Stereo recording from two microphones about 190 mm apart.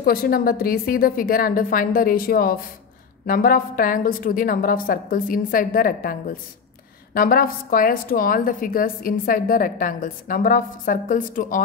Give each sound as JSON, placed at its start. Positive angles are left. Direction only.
{"t": 0.0, "sound": "a woman's voice", "side_deg": 50}